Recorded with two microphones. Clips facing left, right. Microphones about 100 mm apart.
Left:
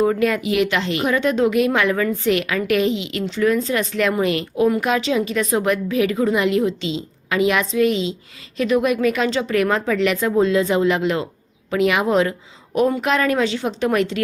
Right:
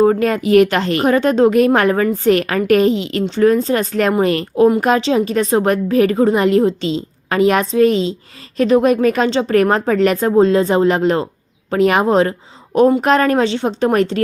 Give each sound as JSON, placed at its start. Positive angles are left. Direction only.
{"t": 0.0, "sound": "a woman's voice", "side_deg": -40}